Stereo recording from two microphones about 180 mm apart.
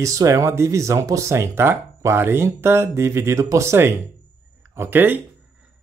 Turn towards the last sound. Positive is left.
turn(degrees=-10)  # may be behind; listen again after turning